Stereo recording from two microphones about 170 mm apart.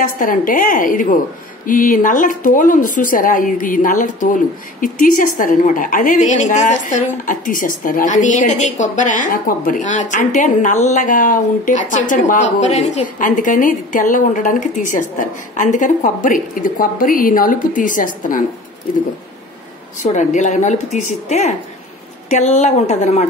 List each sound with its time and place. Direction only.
0.0 s a woman's voice: 55° left (ahead or behind)
20.0 s a woman's voice: 45° left (ahead or behind)